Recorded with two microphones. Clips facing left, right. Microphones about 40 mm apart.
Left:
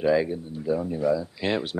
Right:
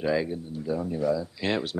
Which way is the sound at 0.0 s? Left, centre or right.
Centre.